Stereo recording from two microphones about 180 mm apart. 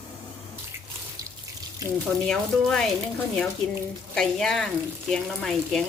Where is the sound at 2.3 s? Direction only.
5° left (ahead or behind).